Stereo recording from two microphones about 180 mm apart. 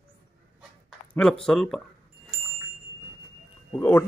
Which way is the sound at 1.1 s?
5° left (ahead or behind).